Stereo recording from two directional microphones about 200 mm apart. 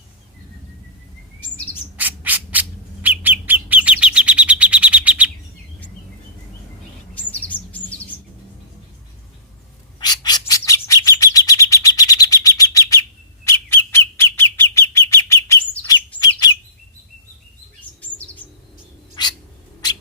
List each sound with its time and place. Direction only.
2.0 s bird: 10° right (ahead or behind)
7.1 s bird: 5° left (ahead or behind)
10.0 s bird: 20° left (ahead or behind)
19.2 s cat: 20° left (ahead or behind)